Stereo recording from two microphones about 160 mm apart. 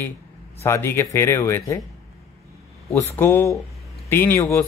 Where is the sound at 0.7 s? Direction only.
15° left (ahead or behind).